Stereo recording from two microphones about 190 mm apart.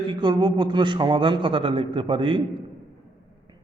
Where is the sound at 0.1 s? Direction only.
25° right (ahead or behind).